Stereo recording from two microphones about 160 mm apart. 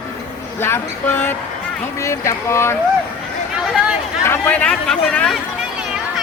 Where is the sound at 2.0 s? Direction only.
20° left (ahead or behind).